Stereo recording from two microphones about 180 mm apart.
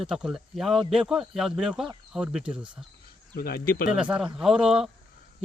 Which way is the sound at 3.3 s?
60° left (ahead or behind).